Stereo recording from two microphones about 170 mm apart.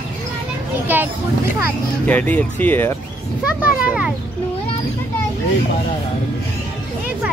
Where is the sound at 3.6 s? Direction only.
5° right (ahead or behind).